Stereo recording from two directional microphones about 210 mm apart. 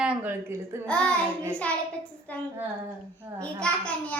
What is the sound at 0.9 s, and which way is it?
Speech, 5° left (ahead or behind).